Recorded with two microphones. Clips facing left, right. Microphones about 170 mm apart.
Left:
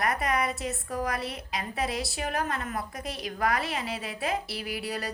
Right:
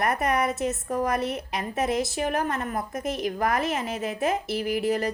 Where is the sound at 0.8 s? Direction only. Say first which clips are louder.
Right 5 dB; 45° right (ahead or behind).